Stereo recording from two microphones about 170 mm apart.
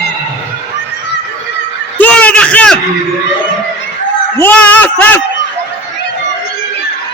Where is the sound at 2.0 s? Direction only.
10° left (ahead or behind).